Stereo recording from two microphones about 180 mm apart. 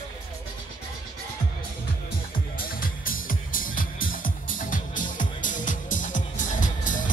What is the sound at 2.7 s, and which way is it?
Music, 50° left (ahead or behind).